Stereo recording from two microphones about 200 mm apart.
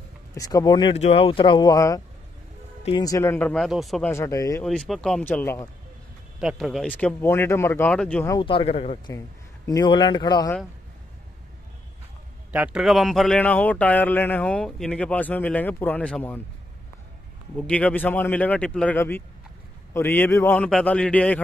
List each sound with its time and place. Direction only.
0.3 s speech: 15° left (ahead or behind); by 4.1 s centre (ahead or behind)
4.1 s speech: 15° left (ahead or behind)
4.6 s speech: centre (ahead or behind)
6.4 s speech: centre (ahead or behind)
8.4 s speech: 25° left (ahead or behind)
12.5 s speech: 5° right (ahead or behind)
17.6 s speech: 5° left (ahead or behind)